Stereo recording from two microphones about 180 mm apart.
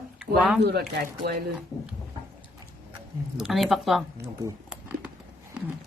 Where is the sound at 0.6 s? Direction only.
60° right (ahead or behind).